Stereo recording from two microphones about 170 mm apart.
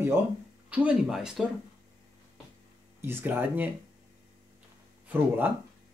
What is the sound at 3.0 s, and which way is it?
Speech, 10° right (ahead or behind).